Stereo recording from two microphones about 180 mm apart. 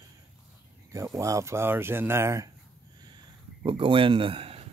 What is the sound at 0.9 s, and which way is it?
Speech, 15° right (ahead or behind).